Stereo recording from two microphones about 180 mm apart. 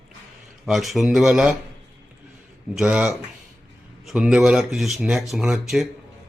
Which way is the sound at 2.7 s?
5° right (ahead or behind).